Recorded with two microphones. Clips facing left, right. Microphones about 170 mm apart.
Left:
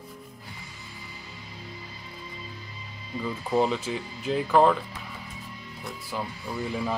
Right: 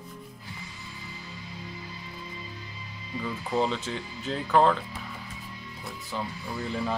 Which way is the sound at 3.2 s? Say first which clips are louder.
Left 3 dB; 5° left (ahead or behind).